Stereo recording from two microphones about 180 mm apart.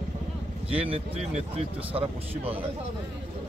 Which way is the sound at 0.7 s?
30° right (ahead or behind).